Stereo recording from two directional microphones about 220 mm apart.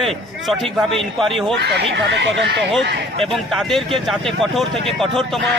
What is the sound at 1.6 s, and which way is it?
Speech, 50° right (ahead or behind).